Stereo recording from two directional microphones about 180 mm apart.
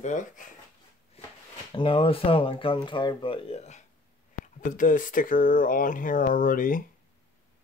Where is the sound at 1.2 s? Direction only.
35° left (ahead or behind).